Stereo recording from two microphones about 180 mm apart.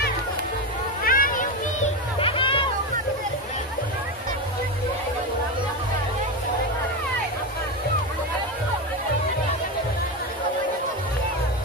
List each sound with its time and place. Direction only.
1.0 s music: 50° left (ahead or behind)
2.1 s music: 30° left (ahead or behind)